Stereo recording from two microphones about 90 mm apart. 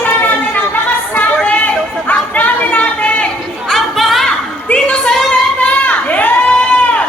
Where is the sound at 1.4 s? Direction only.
15° left (ahead or behind).